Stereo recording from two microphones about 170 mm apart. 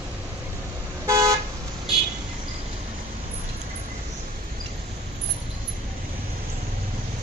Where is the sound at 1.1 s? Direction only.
20° right (ahead or behind).